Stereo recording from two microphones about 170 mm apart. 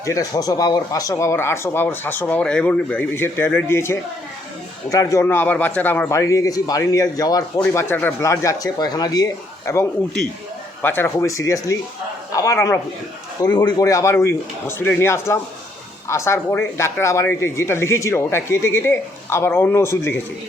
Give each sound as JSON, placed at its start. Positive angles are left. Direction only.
{"t": 0.0, "sound": "speech", "side_deg": 20}
{"t": 10.8, "sound": "a man's voice", "side_deg": 10}